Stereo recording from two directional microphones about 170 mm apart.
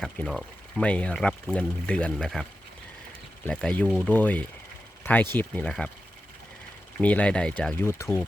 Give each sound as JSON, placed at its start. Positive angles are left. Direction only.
{"t": 0.0, "sound": "speech", "side_deg": 0}
{"t": 7.0, "sound": "speech", "side_deg": 5}